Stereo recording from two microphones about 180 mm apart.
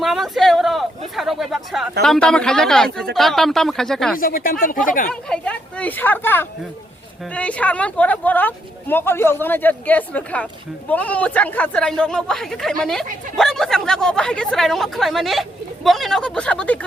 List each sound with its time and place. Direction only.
0.0 s speech: centre (ahead or behind)
4.2 s speech: 50° left (ahead or behind)
5.3 s speech: 5° left (ahead or behind)